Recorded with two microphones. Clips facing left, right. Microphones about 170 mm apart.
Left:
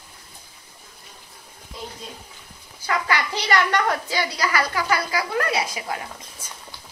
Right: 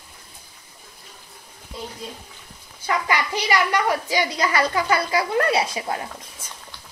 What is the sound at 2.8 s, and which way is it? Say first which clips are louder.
A woman's voice: right 1 dB; 15° right (ahead or behind).